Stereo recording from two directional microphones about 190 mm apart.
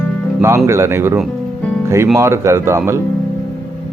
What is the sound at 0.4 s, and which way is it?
Speech, 15° right (ahead or behind).